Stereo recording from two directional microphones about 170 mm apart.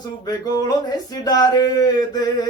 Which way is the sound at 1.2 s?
25° left (ahead or behind).